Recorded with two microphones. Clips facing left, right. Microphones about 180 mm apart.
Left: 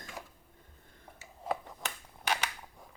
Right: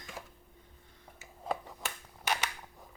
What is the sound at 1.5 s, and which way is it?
Finger snapping, centre (ahead or behind).